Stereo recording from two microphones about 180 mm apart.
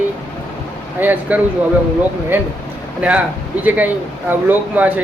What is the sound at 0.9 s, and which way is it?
Speech, 10° right (ahead or behind).